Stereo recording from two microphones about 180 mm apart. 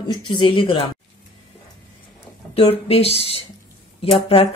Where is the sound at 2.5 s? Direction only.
35° left (ahead or behind).